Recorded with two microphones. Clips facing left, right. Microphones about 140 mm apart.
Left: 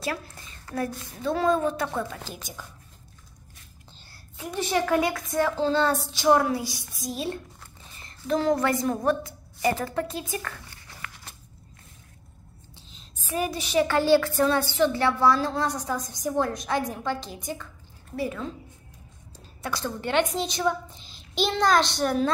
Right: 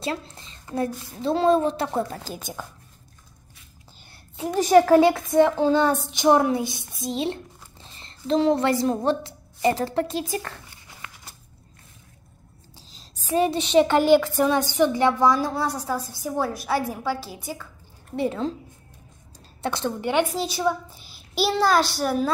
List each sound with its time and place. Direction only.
0.0 s child singing: 25° right (ahead or behind)
4.6 s child singing: 45° right (ahead or behind); by 7.3 s 25° right (ahead or behind)
7.8 s a woman's voice: 30° right (ahead or behind)
12.7 s a woman's voice: 30° right (ahead or behind); by 17.6 s 5° right (ahead or behind)
18.1 s child singing: 25° right (ahead or behind)
19.6 s a woman's voice: 20° right (ahead or behind); by 22.3 s 5° right (ahead or behind)